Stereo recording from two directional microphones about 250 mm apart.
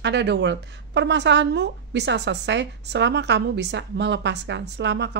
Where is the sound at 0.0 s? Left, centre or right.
Right.